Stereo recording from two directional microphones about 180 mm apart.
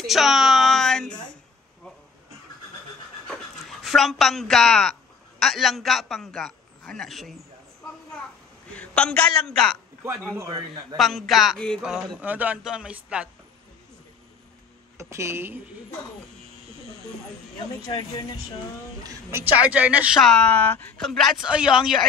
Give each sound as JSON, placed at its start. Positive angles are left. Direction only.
{"t": 0.0, "sound": "a sound", "side_deg": 0}
{"t": 3.8, "sound": "speech", "side_deg": 0}
{"t": 8.7, "sound": "a man's voice", "side_deg": 5}
{"t": 10.3, "sound": "a woman's voice", "side_deg": -15}
{"t": 11.0, "sound": "speech", "side_deg": 0}
{"t": 15.0, "sound": "a woman's voice", "side_deg": -15}
{"t": 19.0, "sound": "a woman's voice", "side_deg": -15}
{"t": 20.2, "sound": "speech", "side_deg": 5}